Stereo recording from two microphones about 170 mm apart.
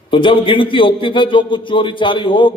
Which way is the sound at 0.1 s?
30° left (ahead or behind).